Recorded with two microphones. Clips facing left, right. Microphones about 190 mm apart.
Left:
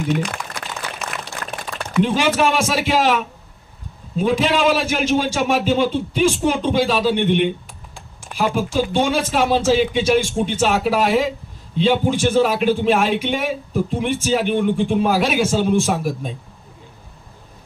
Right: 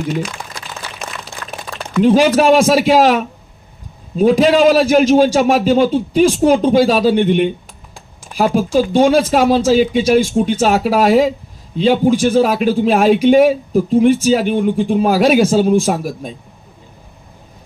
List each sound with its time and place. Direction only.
2.0 s speech: 40° right (ahead or behind)